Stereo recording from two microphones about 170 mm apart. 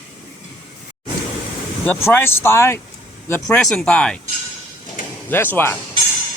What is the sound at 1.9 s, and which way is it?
Speech, 15° left (ahead or behind).